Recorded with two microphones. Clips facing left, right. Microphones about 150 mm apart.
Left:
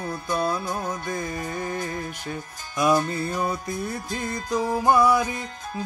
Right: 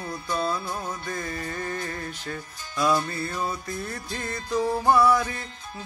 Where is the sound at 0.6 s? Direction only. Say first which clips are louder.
Left 3 dB; 40° left (ahead or behind).